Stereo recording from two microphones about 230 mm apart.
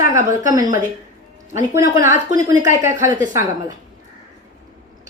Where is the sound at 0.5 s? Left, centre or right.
Centre.